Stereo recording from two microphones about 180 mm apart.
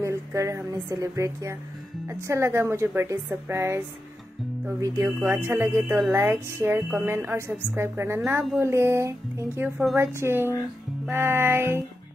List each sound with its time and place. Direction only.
0.0 s a woman's voice: 15° right (ahead or behind)